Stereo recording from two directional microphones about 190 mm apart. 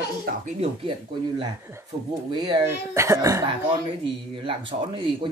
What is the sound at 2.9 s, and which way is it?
Speech, 15° right (ahead or behind).